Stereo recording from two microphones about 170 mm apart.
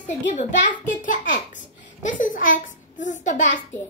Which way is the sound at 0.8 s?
50° left (ahead or behind).